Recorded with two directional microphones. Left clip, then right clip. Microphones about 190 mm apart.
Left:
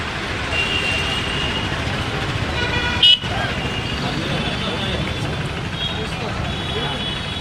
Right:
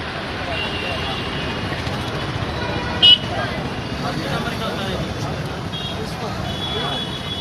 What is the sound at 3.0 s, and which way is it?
Vehicle, 30° right (ahead or behind).